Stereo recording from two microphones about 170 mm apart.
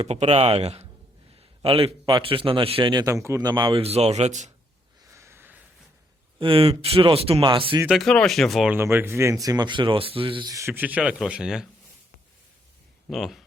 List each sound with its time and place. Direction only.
0.0 s speech: 40° right (ahead or behind)
1.4 s a sound: 35° right (ahead or behind)
2.0 s speech: 30° right (ahead or behind)
5.1 s a sound: 15° right (ahead or behind)
6.4 s speech: 35° right (ahead or behind)
7.9 s speech: centre (ahead or behind)
8.8 s speech: 15° right (ahead or behind)
13.1 s speech: centre (ahead or behind)